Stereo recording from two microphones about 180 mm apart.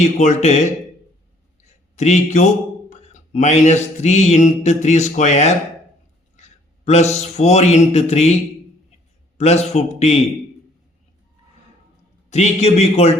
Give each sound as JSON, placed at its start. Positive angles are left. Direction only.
{"t": 0.2, "sound": "a man's voice", "side_deg": 40}
{"t": 2.0, "sound": "a man's voice", "side_deg": 40}
{"t": 2.9, "sound": "mantra", "side_deg": 40}
{"t": 6.4, "sound": "a sound", "side_deg": 40}
{"t": 6.8, "sound": "a man's voice", "side_deg": 40}
{"t": 9.4, "sound": "a man's voice", "side_deg": 40}
{"t": 12.3, "sound": "a man's voice", "side_deg": 40}